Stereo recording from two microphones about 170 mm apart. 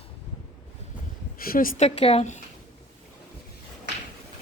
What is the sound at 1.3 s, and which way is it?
Speech, 55° left (ahead or behind).